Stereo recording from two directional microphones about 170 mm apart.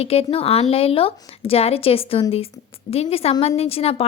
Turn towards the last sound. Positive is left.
turn(degrees=35)  # may be behind; listen again after turning